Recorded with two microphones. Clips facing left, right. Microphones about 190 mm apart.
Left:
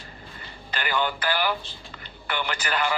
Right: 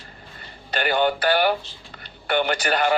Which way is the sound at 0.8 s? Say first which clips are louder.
Right 6 dB; 50° right (ahead or behind).